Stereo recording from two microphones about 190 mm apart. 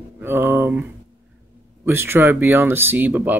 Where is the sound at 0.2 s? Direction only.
10° right (ahead or behind).